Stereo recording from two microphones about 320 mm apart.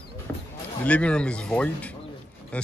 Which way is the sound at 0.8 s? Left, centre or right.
Centre.